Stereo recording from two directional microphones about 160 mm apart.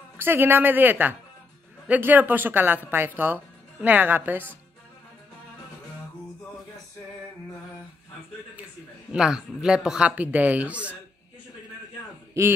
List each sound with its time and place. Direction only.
0.2 s speech: 15° right (ahead or behind)
9.1 s speech: 5° right (ahead or behind)
12.4 s speech: 20° right (ahead or behind)